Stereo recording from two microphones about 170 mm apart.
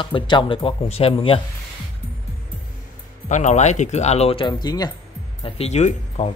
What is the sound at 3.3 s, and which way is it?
Speech, 45° left (ahead or behind).